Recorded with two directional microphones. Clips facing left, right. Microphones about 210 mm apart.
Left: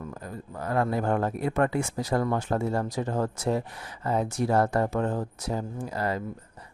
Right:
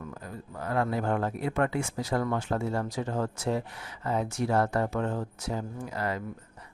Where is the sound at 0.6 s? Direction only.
40° left (ahead or behind).